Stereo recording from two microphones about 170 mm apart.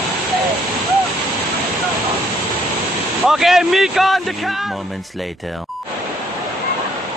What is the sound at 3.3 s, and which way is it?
Speech, centre (ahead or behind).